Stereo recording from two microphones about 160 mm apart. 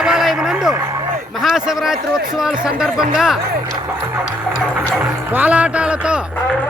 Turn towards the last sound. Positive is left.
turn(degrees=-10)  # may be behind; listen again after turning